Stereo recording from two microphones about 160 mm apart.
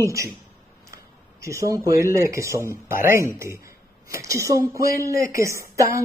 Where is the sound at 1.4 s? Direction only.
20° right (ahead or behind).